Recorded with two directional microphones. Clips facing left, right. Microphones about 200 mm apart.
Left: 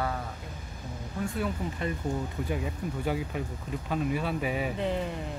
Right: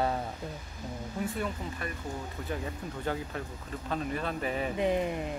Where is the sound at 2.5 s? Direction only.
10° left (ahead or behind).